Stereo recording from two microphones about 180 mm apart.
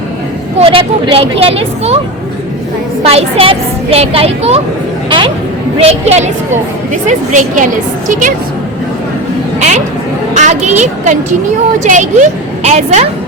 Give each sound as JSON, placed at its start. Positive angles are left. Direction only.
{"t": 0.6, "sound": "a woman's voice", "side_deg": -30}
{"t": 3.0, "sound": "a woman's voice", "side_deg": -35}
{"t": 5.0, "sound": "a sound", "side_deg": -25}
{"t": 5.8, "sound": "a woman's voice", "side_deg": -35}
{"t": 9.6, "sound": "a woman's voice", "side_deg": -40}